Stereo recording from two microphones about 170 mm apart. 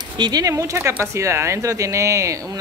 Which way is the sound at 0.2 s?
20° right (ahead or behind).